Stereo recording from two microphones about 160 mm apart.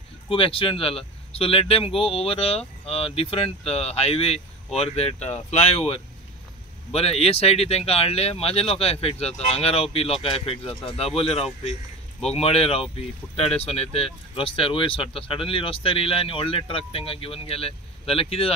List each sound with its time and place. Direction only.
0.3 s speech: 35° left (ahead or behind)